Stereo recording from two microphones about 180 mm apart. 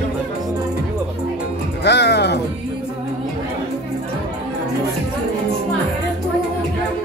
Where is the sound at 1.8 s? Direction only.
70° left (ahead or behind).